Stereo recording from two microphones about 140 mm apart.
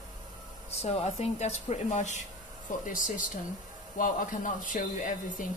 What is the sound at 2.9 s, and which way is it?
Speech, 70° left (ahead or behind).